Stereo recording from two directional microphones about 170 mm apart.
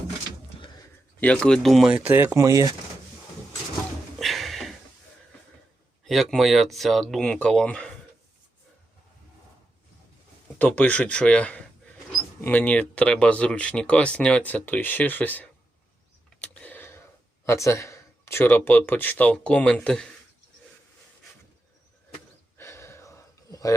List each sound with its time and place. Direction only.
1.2 s speech: 5° left (ahead or behind); by 2.7 s 20° right (ahead or behind)
4.2 s a sound: centre (ahead or behind)
6.1 s speech: centre (ahead or behind)
10.6 s speech: 10° left (ahead or behind)
16.4 s a sound: 10° left (ahead or behind)
17.4 s speech: 15° left (ahead or behind)
22.5 s gasp: 15° left (ahead or behind)